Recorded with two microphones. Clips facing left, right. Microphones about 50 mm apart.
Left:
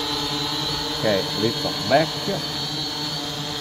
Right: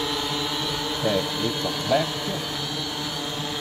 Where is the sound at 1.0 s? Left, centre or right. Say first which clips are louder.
Left 4 dB; centre.